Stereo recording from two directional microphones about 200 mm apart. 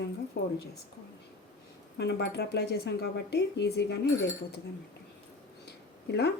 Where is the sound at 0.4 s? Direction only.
55° left (ahead or behind).